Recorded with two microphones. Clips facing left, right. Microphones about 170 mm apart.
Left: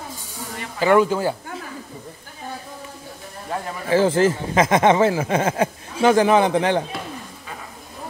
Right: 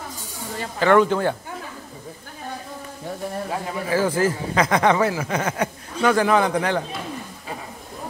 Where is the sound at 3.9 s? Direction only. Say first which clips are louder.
Left 4 dB; 25° left (ahead or behind).